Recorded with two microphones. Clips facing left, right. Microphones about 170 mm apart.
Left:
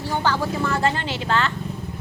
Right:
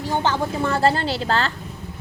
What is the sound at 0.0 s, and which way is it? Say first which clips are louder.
Speech: right 1 dB; 20° right (ahead or behind).